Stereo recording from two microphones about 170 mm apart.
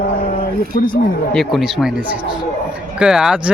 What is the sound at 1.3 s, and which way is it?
Speech, centre (ahead or behind).